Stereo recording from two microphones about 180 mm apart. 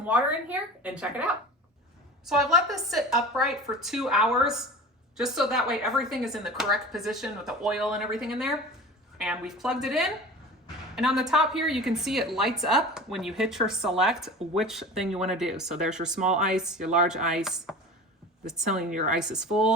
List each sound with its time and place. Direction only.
0.0 s a woman's voice: 10° right (ahead or behind)
18.9 s a woman's voice: 45° right (ahead or behind)
19.1 s a woman's voice: 5° right (ahead or behind)